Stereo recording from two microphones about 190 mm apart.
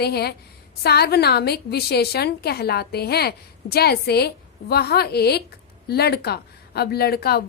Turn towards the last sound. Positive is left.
turn(degrees=55)  # may be behind; listen again after turning